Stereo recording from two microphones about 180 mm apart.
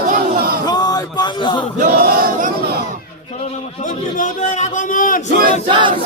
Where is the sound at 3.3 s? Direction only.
40° left (ahead or behind).